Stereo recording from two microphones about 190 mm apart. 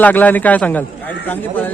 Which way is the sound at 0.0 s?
10° left (ahead or behind).